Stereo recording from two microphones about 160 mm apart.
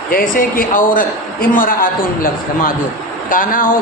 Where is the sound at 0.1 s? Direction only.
60° left (ahead or behind).